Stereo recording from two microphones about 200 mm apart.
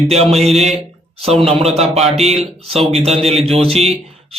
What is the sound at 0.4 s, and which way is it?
Speech, 30° right (ahead or behind).